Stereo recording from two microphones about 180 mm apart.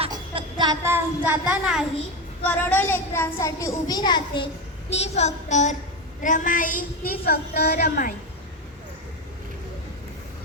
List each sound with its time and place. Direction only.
0.1 s speech: 25° right (ahead or behind); by 1.8 s 5° right (ahead or behind)
2.4 s a child's voice: 10° left (ahead or behind)
4.9 s child singing: 35° left (ahead or behind)
6.2 s a woman's voice: 45° left (ahead or behind)